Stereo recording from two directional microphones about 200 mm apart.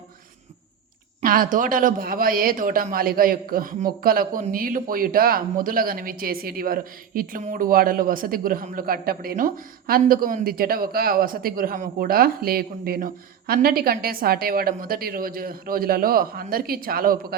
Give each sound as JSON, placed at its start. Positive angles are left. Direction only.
{"t": 1.2, "sound": "a man's voice", "side_deg": -45}